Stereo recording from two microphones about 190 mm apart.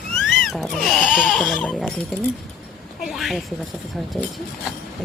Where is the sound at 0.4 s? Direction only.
Centre (ahead or behind).